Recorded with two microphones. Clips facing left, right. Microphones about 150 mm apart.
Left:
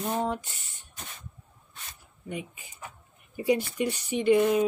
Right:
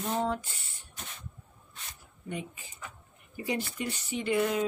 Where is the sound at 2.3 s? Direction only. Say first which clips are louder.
Left 1 dB; 10° left (ahead or behind).